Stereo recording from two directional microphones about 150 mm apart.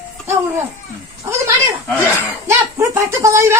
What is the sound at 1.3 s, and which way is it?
A woman's voice, 20° right (ahead or behind).